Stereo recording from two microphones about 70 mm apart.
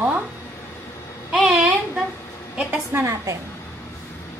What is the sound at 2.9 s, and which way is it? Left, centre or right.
Speech, right.